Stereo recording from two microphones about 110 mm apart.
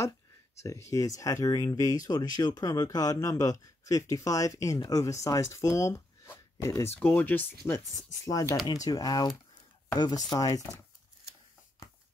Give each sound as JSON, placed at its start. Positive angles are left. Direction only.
{"t": 0.7, "sound": "speech", "side_deg": 30}
{"t": 8.3, "sound": "speech", "side_deg": 30}